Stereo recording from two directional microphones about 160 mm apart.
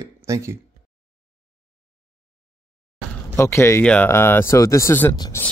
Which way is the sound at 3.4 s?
15° left (ahead or behind).